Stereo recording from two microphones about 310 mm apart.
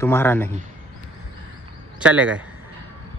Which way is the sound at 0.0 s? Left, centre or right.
Centre.